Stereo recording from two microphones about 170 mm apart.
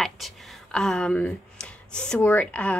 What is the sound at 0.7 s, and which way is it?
Speech, 5° left (ahead or behind).